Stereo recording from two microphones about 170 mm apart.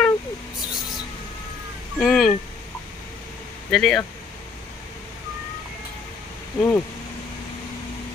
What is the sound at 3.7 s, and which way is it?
Speech, centre (ahead or behind).